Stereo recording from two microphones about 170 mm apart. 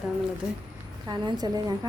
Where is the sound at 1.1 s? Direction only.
25° right (ahead or behind).